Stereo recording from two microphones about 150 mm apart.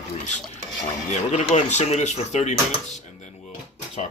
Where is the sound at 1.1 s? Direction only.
50° left (ahead or behind).